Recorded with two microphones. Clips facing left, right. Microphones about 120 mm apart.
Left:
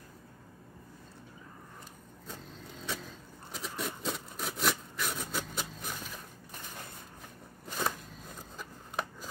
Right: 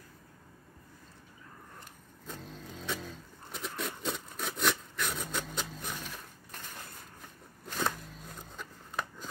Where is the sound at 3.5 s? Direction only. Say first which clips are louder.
Even; centre (ahead or behind).